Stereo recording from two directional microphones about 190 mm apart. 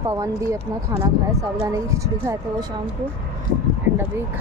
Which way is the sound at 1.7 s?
15° right (ahead or behind).